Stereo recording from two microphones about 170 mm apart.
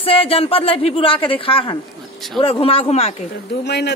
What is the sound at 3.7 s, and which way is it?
Speech, 80° left.